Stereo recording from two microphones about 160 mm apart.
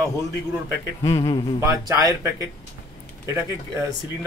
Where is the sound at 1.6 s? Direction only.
20° right (ahead or behind).